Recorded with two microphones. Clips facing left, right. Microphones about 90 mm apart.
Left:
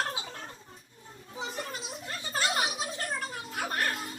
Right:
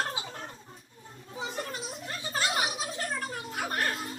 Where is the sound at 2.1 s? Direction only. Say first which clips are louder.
Even; centre (ahead or behind).